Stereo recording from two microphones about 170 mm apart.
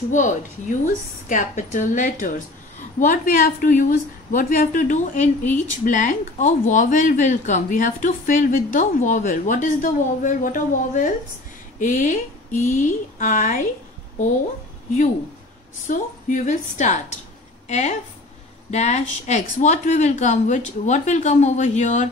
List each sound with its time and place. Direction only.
0.1 s a woman's voice: 45° left (ahead or behind)
15.9 s a woman's voice: 50° left (ahead or behind)